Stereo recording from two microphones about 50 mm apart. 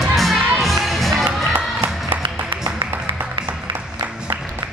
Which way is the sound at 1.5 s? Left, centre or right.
Right.